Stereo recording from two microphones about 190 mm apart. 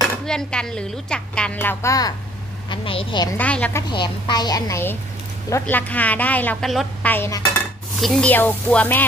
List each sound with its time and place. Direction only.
0.3 s a woman's voice: 5° left (ahead or behind); by 3.3 s 25° left (ahead or behind)
3.3 s a woman's voice: 5° left (ahead or behind)
3.9 s a woman's voice: 25° left (ahead or behind)
8.0 s a woman's voice: 5° left (ahead or behind)